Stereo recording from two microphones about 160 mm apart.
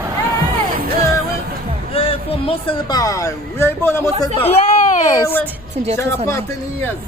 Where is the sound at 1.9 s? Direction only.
35° left (ahead or behind); by 6.8 s 15° left (ahead or behind).